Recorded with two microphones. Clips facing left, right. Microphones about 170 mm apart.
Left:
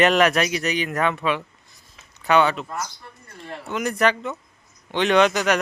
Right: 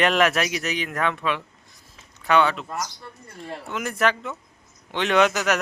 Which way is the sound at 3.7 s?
Centre (ahead or behind).